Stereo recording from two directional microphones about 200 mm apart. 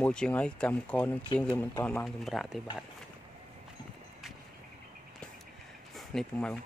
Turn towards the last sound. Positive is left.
turn(degrees=5)  # may be behind; listen again after turning